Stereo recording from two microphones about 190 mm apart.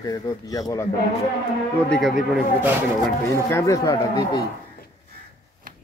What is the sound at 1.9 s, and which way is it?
Speech, centre (ahead or behind).